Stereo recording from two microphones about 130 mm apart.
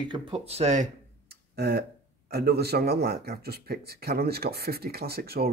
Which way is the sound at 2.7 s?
90° right.